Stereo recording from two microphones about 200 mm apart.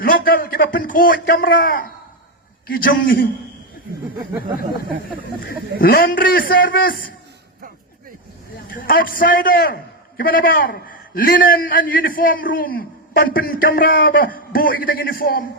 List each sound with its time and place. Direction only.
0.0 s a man's voice: 45° left (ahead or behind)
5.4 s a man's voice: 50° left (ahead or behind)
8.7 s a man's voice: 45° left (ahead or behind)